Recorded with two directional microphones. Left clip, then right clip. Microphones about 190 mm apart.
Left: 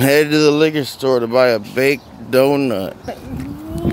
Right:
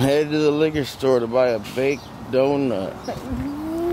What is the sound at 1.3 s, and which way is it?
Speech, 40° left (ahead or behind).